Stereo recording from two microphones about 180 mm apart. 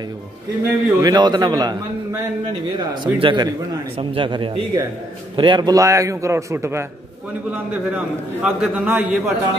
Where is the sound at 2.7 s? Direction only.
25° right (ahead or behind).